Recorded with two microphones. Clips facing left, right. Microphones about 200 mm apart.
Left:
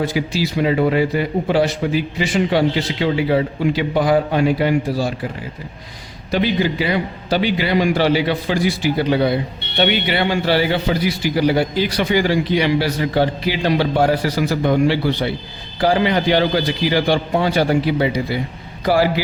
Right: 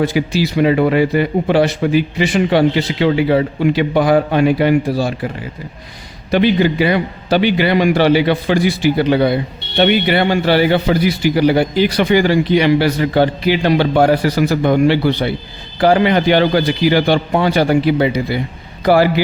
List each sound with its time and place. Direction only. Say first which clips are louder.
0.0 s a man's voice: right 4 dB; 65° right (ahead or behind)
6.3 s a man's voice: right 5 dB; 60° right (ahead or behind)
9.7 s a man's voice: right 5 dB; 50° right (ahead or behind)